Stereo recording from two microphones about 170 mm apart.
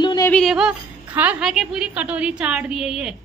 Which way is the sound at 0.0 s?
25° left (ahead or behind).